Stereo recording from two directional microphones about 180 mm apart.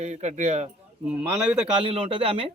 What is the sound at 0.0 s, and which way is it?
Speech, 40° right (ahead or behind).